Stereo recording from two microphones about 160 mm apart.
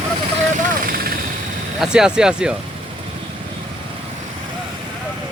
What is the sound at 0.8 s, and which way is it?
Vehicle, 65° right (ahead or behind).